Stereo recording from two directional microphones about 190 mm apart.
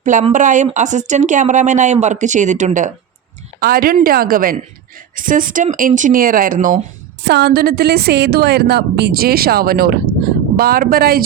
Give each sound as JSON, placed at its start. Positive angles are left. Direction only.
{"t": 0.0, "sound": "a woman's voice", "side_deg": -40}
{"t": 7.3, "sound": "a woman's voice", "side_deg": -60}